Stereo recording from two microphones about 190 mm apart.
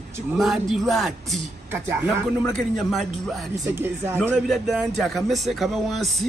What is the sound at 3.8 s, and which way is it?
Speech, 10° right (ahead or behind).